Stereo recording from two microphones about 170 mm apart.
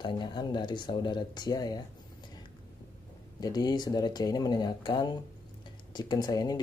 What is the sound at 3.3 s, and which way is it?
Speech, 25° left (ahead or behind).